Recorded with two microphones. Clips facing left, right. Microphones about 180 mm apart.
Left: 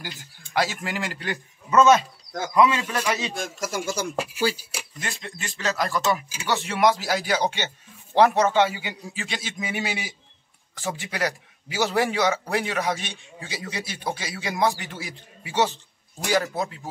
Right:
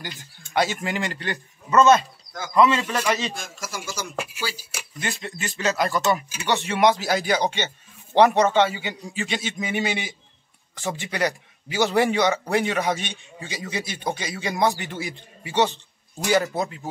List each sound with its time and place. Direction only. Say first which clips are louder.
0.5 s a man's voice: right 2 dB; centre (ahead or behind)
3.6 s speech: left 5 dB; 55° left (ahead or behind)
5.0 s speech: right 5 dB; 5° right (ahead or behind)